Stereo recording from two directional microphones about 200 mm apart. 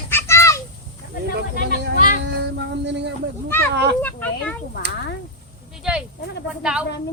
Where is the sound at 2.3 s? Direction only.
60° right (ahead or behind).